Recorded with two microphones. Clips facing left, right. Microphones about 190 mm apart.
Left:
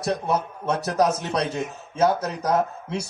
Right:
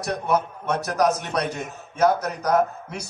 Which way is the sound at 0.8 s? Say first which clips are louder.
Even; 25° left (ahead or behind).